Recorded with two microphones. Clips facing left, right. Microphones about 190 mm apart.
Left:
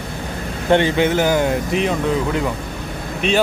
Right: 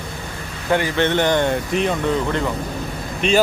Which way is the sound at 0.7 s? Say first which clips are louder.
Left 5 dB; 25° left (ahead or behind).